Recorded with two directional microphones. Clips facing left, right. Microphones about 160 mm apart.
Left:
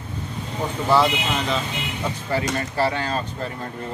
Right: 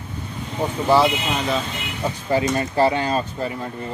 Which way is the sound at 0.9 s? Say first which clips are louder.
Right 2 dB; 15° right (ahead or behind).